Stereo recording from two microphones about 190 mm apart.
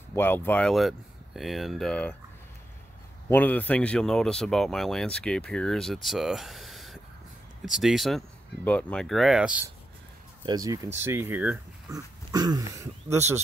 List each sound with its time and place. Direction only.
0.1 s speech: 10° left (ahead or behind)
3.3 s speech: 10° left (ahead or behind)
10.4 s speech: 20° right (ahead or behind)
12.3 s speech: 20° right (ahead or behind)